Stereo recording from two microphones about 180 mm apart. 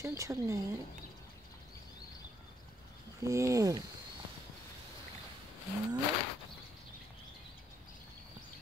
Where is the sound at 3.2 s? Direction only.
15° right (ahead or behind).